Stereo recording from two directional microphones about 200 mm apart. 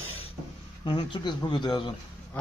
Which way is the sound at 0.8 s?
25° left (ahead or behind).